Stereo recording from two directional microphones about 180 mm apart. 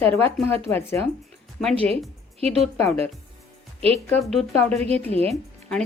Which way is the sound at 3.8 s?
35° right (ahead or behind).